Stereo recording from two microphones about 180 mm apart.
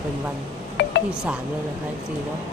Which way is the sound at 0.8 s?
75° left (ahead or behind).